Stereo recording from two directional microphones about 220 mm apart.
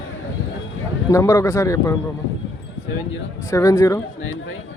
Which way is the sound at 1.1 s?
15° left (ahead or behind).